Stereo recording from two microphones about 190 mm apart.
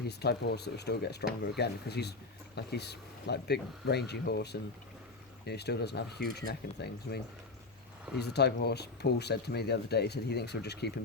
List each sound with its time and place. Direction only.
0.1 s speech: 60° left (ahead or behind)
8.2 s speech: 60° left (ahead or behind)